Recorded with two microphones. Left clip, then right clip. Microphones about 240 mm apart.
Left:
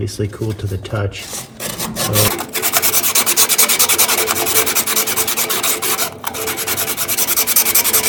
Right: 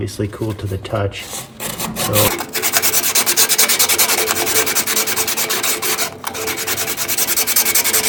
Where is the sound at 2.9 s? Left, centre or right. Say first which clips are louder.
Even; centre.